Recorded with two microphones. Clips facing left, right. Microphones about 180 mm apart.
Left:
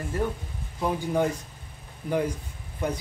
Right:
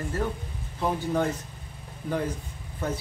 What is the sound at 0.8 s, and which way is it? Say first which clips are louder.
Speech: left 1 dB; 10° left (ahead or behind).